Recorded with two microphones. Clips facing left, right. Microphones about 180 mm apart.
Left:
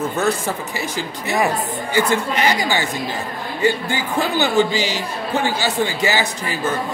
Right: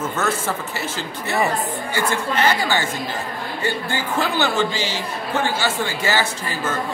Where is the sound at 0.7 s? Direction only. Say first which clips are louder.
Left 2 dB; 15° left (ahead or behind).